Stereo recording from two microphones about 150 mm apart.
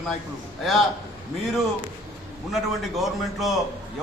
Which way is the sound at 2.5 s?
Centre (ahead or behind).